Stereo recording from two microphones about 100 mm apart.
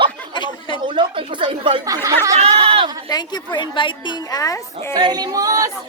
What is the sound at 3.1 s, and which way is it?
A woman's voice, 45° left (ahead or behind).